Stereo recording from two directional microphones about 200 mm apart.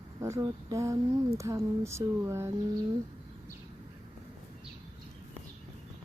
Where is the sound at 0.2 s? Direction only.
15° right (ahead or behind).